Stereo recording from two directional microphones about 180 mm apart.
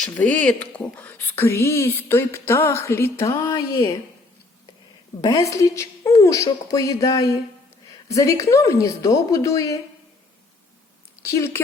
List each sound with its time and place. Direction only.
0.0 s speech: 10° left (ahead or behind)
3.4 s speech: 25° left (ahead or behind)
5.2 s speech: 20° left (ahead or behind)
11.3 s speech: 15° left (ahead or behind)